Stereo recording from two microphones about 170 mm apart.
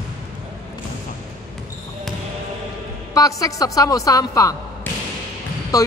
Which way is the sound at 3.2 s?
20° left (ahead or behind).